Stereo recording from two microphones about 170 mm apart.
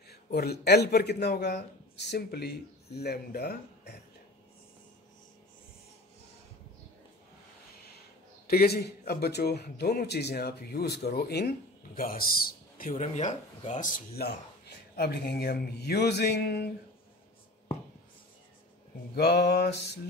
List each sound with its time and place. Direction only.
0.1 s a man's voice: 70° left (ahead or behind)
8.5 s a man's voice: 65° left (ahead or behind)
13.0 s speech: 45° left (ahead or behind); by 14.3 s 60° left (ahead or behind)
15.0 s a man's voice: 70° left (ahead or behind)
19.1 s a man's voice: 70° left (ahead or behind)